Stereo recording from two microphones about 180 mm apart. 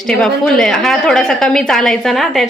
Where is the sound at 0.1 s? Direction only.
5° left (ahead or behind).